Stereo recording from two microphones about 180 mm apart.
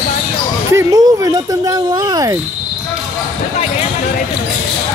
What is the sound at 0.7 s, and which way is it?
Speech, 20° right (ahead or behind).